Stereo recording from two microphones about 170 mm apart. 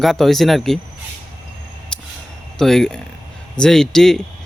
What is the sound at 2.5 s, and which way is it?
Speech, centre (ahead or behind).